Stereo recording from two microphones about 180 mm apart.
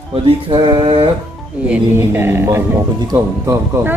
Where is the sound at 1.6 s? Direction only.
10° right (ahead or behind).